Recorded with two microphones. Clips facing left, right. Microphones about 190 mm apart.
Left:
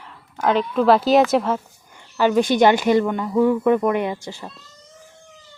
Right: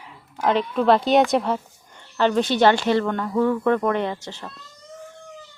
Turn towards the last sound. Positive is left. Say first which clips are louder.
# left 2 dB
turn(degrees=10)  # may be behind; listen again after turning